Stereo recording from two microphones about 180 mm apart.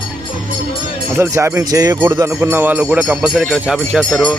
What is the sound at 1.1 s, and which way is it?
Speech, 15° right (ahead or behind).